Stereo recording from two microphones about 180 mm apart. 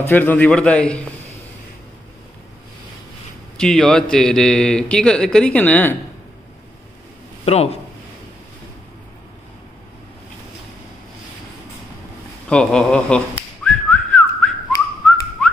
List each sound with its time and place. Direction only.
0.1 s a man's voice: 10° left (ahead or behind)
3.5 s a man's voice: 5° left (ahead or behind)
7.4 s speech: 35° left (ahead or behind)
12.4 s a man's voice: 5° left (ahead or behind)
13.7 s whistling: 5° left (ahead or behind)